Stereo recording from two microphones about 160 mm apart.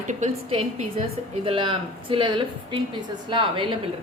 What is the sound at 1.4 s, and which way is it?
A woman's voice, 35° right (ahead or behind).